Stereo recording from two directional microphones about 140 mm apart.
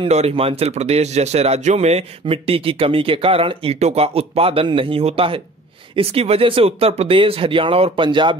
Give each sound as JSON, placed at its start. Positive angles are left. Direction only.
{"t": 0.0, "sound": "speech", "side_deg": -45}